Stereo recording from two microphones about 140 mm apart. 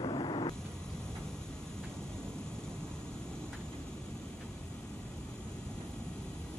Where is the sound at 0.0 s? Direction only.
35° left (ahead or behind).